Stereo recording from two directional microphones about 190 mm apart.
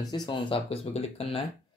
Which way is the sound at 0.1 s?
25° left (ahead or behind).